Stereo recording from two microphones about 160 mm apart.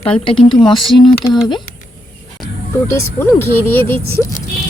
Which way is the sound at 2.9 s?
15° left (ahead or behind).